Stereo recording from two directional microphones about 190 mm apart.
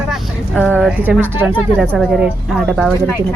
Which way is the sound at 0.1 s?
5° left (ahead or behind).